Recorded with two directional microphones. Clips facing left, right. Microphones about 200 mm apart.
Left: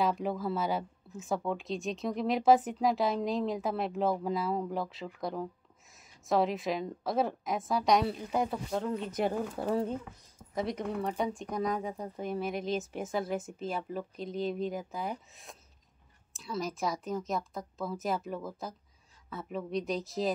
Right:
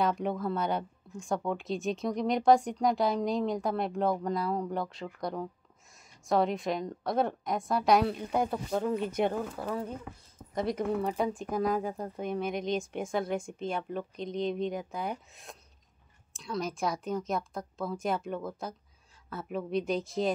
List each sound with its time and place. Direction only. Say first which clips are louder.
0.0 s a woman's voice: right 1 dB; centre (ahead or behind)
9.6 s speech: left 4 dB; 25° left (ahead or behind)
10.5 s a woman's voice: right 3 dB; centre (ahead or behind)